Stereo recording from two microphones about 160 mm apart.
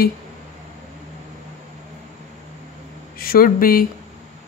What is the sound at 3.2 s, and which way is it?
Speech, 65° left (ahead or behind).